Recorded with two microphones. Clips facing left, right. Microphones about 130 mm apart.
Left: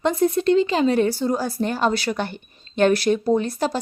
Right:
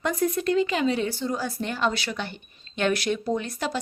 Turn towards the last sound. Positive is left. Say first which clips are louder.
# left 7 dB
turn(degrees=35)  # may be behind; listen again after turning